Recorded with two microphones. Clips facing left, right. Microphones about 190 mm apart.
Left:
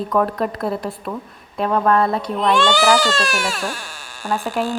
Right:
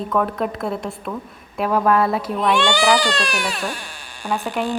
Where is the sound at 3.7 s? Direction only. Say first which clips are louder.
Left 1 dB; 45° left (ahead or behind).